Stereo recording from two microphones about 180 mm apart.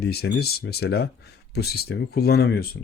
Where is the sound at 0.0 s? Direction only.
65° left (ahead or behind).